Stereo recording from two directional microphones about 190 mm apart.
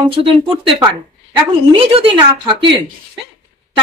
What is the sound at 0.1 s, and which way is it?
Speech, 25° right (ahead or behind).